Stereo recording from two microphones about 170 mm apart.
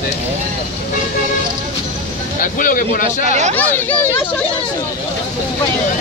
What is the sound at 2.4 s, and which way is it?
Speech, 55° left (ahead or behind).